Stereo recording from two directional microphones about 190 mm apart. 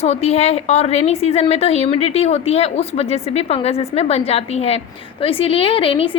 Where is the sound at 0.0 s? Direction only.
35° left (ahead or behind).